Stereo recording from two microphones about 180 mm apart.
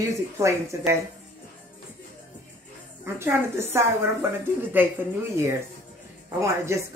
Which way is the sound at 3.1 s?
15° right (ahead or behind).